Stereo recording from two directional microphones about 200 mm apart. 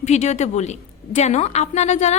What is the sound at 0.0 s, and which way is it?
A woman's voice, 35° left (ahead or behind).